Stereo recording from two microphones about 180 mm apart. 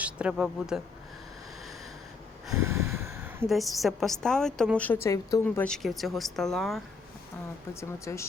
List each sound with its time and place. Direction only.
0.0 s speech: 5° right (ahead or behind)
2.6 s snort: 15° right (ahead or behind)
3.4 s a woman's voice: centre (ahead or behind); by 5.6 s 15° left (ahead or behind)
5.6 s a woman's voice: centre (ahead or behind)
7.7 s speech: 15° left (ahead or behind)